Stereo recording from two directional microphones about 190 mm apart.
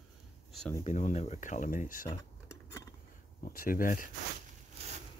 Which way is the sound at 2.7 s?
15° left (ahead or behind).